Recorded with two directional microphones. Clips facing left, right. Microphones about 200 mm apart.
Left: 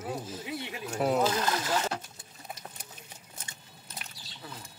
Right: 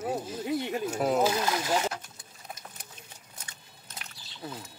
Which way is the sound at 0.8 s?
5° right (ahead or behind).